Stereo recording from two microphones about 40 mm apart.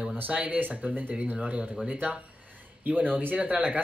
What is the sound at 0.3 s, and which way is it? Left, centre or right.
Speech, right.